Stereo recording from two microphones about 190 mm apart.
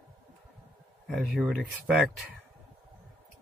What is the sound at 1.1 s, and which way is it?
Speech, centre (ahead or behind).